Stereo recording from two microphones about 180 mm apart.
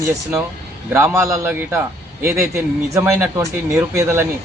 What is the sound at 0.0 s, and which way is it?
A man's voice, 20° right (ahead or behind).